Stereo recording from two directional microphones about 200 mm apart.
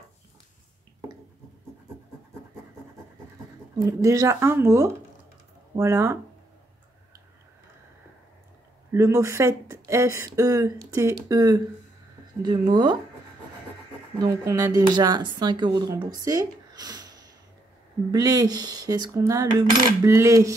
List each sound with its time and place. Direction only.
3.7 s speech: 15° right (ahead or behind)
8.9 s speech: 15° right (ahead or behind)
14.1 s speech: 15° right (ahead or behind)
18.1 s speech: 20° right (ahead or behind)